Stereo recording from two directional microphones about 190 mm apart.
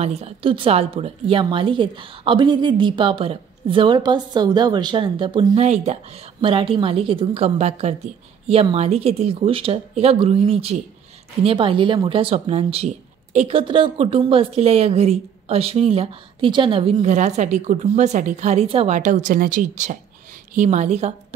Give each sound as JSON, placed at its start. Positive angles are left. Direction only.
{"t": 0.0, "sound": "a woman's voice", "side_deg": -35}
{"t": 5.6, "sound": "speech", "side_deg": -35}